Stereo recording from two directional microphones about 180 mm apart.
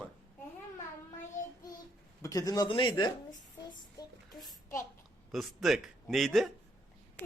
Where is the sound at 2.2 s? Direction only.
20° left (ahead or behind).